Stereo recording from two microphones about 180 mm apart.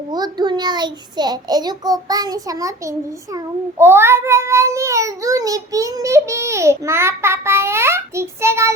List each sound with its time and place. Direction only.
0.1 s a child's voice: 25° right (ahead or behind)
3.3 s child singing: 15° right (ahead or behind)